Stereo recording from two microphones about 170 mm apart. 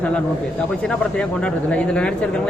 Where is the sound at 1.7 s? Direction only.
5° left (ahead or behind).